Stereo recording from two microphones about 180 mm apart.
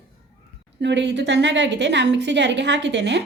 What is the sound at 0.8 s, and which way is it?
A woman's voice, 75° right (ahead or behind).